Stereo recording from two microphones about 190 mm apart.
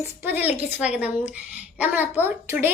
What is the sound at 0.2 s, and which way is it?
A woman's voice, 10° right (ahead or behind).